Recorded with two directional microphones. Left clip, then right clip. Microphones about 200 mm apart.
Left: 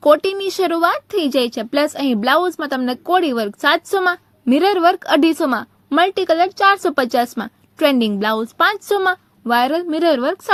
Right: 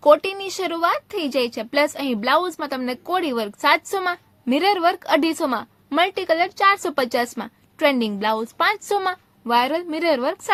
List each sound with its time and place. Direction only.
0.0 s speech: 25° left (ahead or behind)